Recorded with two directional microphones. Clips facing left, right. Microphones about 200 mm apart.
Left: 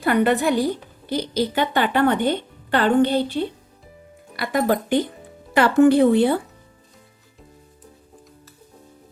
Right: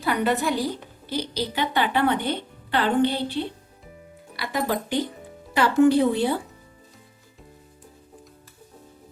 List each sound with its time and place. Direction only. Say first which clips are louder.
0.0 s a woman's voice: left 5 dB; 55° left (ahead or behind)